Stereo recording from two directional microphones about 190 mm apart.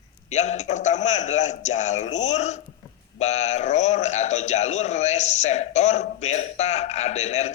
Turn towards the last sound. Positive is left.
turn(degrees=35)  # may be behind; listen again after turning